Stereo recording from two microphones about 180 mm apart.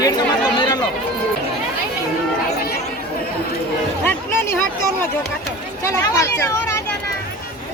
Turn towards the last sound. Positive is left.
turn(degrees=15)  # may be behind; listen again after turning